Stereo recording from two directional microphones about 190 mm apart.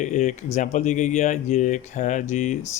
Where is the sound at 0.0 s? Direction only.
40° left (ahead or behind).